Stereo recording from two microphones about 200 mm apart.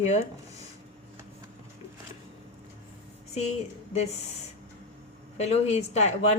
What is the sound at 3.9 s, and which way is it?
A woman's voice, 35° left (ahead or behind).